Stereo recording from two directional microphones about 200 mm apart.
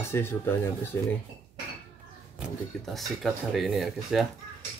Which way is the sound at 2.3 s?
Centre (ahead or behind).